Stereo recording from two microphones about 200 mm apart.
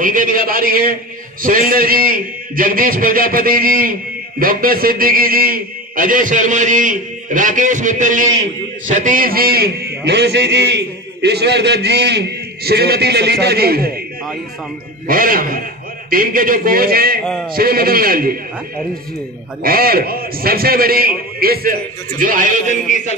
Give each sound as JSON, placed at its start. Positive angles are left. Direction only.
{"t": 0.0, "sound": "a man's voice", "side_deg": -45}
{"t": 15.0, "sound": "a man's voice", "side_deg": -45}
{"t": 17.2, "sound": "a man's voice", "side_deg": 5}
{"t": 17.6, "sound": "a man's voice", "side_deg": -50}
{"t": 19.6, "sound": "a man's voice", "side_deg": -50}